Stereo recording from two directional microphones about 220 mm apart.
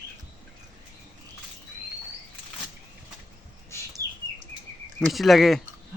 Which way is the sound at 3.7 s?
10° left (ahead or behind).